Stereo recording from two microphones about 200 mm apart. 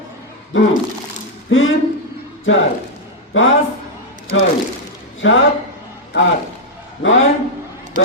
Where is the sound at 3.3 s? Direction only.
75° left (ahead or behind).